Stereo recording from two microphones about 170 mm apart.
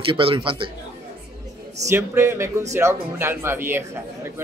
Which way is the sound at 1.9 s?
15° right (ahead or behind).